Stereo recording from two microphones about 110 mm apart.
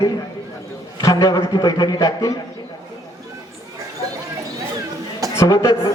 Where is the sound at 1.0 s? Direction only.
30° left (ahead or behind).